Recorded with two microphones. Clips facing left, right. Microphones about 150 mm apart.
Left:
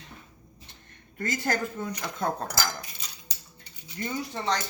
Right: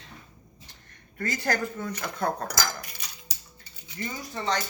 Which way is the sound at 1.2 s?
20° left (ahead or behind).